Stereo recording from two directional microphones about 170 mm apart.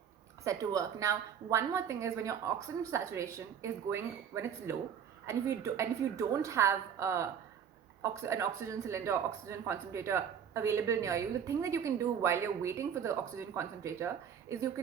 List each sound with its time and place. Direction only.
0.4 s speech: 20° right (ahead or behind)